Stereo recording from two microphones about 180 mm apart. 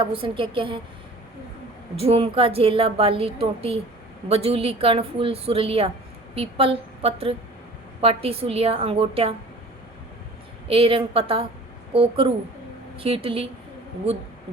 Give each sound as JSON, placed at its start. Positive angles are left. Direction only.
{"t": 0.0, "sound": "a woman's voice", "side_deg": -30}
{"t": 2.0, "sound": "a woman's voice", "side_deg": -35}
{"t": 10.7, "sound": "a woman's voice", "side_deg": -30}